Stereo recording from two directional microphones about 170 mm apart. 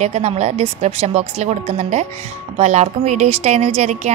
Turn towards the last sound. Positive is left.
turn(degrees=-40)  # may be behind; listen again after turning